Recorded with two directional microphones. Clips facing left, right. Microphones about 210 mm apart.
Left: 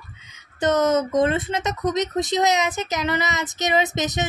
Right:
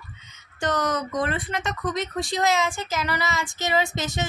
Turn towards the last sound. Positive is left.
turn(degrees=20)  # may be behind; listen again after turning